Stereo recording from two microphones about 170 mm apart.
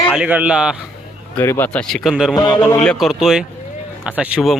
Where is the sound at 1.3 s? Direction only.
15° left (ahead or behind); by 2.3 s 5° right (ahead or behind).